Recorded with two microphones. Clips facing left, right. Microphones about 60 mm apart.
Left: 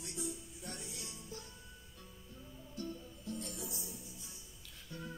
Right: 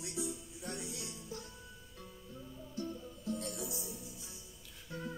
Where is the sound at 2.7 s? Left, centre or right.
Centre.